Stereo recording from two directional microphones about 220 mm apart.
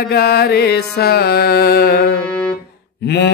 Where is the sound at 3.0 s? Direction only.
50° left (ahead or behind).